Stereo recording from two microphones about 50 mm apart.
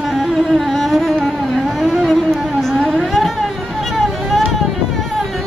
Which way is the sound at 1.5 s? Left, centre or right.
Centre.